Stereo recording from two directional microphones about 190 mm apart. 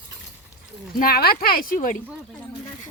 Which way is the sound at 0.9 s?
50° left (ahead or behind).